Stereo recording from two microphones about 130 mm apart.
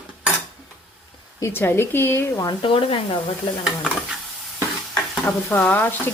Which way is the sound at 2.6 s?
45° left (ahead or behind).